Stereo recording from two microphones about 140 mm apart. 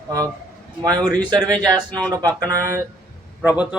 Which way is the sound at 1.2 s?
30° right (ahead or behind).